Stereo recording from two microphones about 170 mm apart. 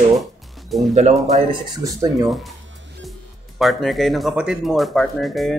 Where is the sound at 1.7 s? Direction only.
25° right (ahead or behind).